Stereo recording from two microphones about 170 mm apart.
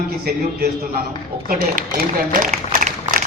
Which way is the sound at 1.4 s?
55° right (ahead or behind).